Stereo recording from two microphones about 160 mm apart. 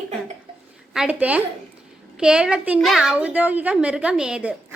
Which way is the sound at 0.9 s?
5° right (ahead or behind).